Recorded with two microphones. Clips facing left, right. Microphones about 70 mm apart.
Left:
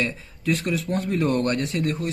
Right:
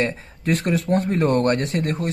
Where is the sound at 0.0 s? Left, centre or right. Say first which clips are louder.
Right 3 dB; right.